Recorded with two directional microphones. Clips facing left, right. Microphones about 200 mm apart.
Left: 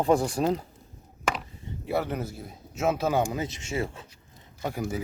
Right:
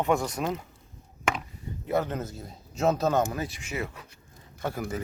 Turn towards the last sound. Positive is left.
turn(degrees=15)  # may be behind; listen again after turning